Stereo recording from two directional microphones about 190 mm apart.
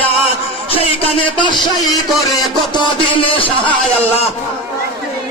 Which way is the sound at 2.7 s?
30° left (ahead or behind).